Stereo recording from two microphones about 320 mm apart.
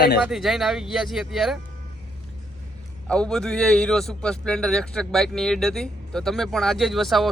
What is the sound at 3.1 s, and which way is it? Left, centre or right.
Speech, centre.